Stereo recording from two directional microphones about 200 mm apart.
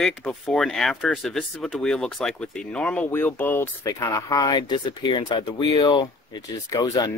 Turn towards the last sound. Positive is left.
turn(degrees=15)  # may be behind; listen again after turning